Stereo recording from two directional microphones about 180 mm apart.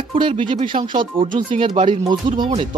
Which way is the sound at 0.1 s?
30° right (ahead or behind).